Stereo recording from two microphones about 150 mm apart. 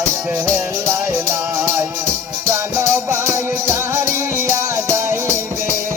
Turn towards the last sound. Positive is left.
turn(degrees=-15)  # may be behind; listen again after turning